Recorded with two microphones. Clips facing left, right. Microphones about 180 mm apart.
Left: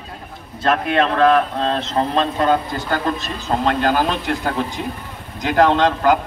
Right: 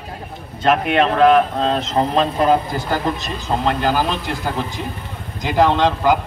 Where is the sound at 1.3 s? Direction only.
20° right (ahead or behind).